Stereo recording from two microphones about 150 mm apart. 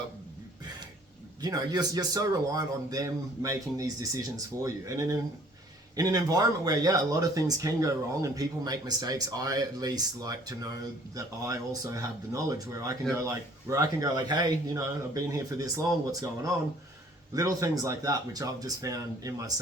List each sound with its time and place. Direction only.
1.4 s speech: 25° right (ahead or behind)